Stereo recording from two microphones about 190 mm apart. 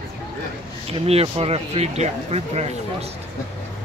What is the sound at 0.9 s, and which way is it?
Speech, 30° right (ahead or behind).